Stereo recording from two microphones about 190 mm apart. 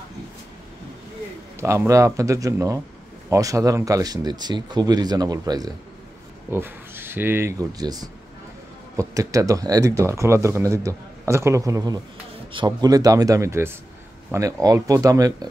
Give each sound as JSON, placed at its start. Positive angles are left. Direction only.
{"t": 1.6, "sound": "speech", "side_deg": -15}